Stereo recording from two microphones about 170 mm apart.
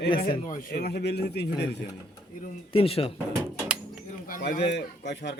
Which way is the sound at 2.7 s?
35° left (ahead or behind).